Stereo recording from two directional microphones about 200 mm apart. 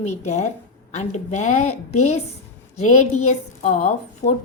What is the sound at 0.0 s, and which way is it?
A woman's voice, 35° left (ahead or behind).